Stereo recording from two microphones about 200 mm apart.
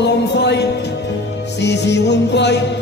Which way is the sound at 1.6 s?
60° left (ahead or behind).